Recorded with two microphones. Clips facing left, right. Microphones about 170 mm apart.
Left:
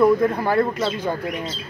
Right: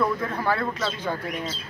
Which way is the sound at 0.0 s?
15° left (ahead or behind).